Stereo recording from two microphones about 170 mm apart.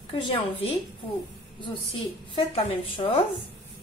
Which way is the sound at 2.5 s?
30° left (ahead or behind).